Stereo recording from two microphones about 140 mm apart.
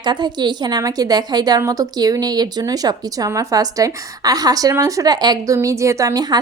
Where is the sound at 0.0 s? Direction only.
30° right (ahead or behind).